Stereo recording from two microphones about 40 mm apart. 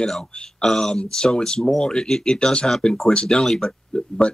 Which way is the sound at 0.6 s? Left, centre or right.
Centre.